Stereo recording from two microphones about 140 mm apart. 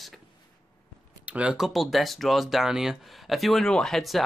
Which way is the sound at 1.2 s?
10° right (ahead or behind).